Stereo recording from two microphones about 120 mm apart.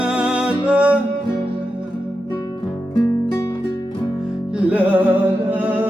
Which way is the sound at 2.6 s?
15° left (ahead or behind).